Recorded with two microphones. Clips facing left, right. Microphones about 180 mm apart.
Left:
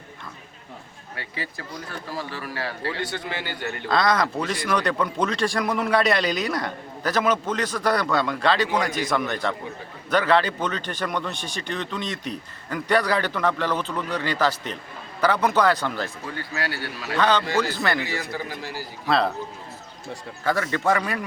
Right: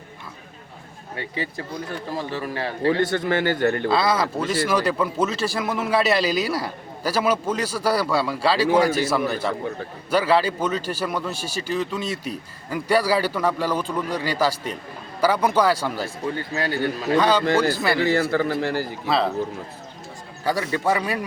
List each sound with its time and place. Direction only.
1.1 s speech: 20° right (ahead or behind)
3.0 s a man's voice: 50° right (ahead or behind)
3.8 s speech: 5° right (ahead or behind)
18.1 s a man's voice: 55° right (ahead or behind)
19.0 s a man's voice: centre (ahead or behind)
20.4 s speech: 10° right (ahead or behind)